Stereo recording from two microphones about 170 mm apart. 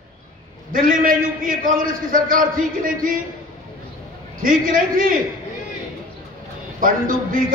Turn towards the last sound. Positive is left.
turn(degrees=-55)  # may be behind; listen again after turning